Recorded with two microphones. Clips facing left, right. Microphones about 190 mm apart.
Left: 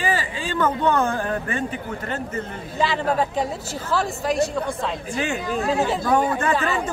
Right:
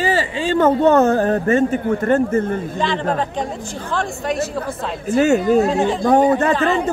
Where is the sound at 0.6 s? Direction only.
45° right (ahead or behind).